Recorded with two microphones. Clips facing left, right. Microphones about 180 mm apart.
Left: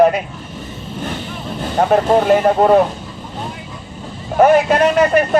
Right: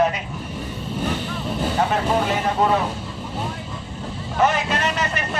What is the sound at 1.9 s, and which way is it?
Speech, 50° left (ahead or behind).